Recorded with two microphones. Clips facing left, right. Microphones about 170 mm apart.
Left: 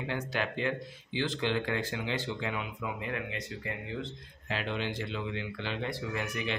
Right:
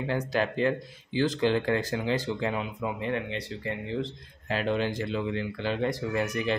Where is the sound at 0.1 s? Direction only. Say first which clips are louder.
Right 6 dB; 40° right (ahead or behind).